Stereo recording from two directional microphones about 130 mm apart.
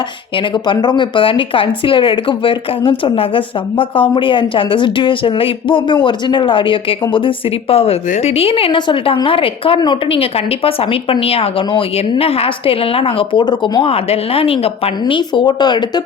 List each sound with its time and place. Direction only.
0.5 s a woman's voice: 35° left (ahead or behind)
13.8 s a woman's voice: 50° left (ahead or behind)